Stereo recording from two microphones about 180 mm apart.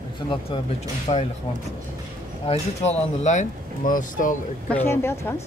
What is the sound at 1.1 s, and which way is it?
Speech, 30° left (ahead or behind).